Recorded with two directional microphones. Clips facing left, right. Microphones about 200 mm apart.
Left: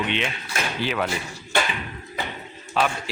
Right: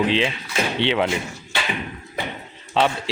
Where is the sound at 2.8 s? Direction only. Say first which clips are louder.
Right 3 dB; 25° right (ahead or behind).